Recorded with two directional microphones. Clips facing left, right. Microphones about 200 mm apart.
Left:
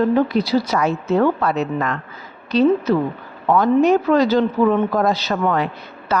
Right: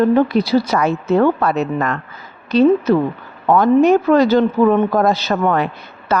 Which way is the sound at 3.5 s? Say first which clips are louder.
Right 3 dB; 50° right (ahead or behind).